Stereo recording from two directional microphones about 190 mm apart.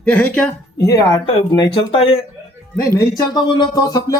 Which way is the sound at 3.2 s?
25° left (ahead or behind).